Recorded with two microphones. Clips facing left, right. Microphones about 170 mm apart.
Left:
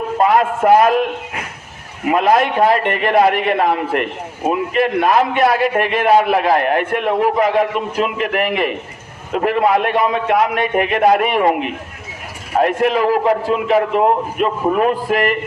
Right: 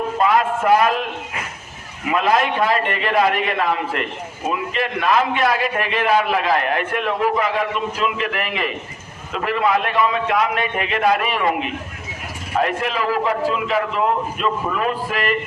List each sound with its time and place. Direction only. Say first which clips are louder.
0.2 s a man's voice: left 4 dB; 45° left (ahead or behind)
2.0 s a man's voice: left 4 dB; 50° left (ahead or behind)
12.6 s a man's voice: left 9 dB; 50° left (ahead or behind)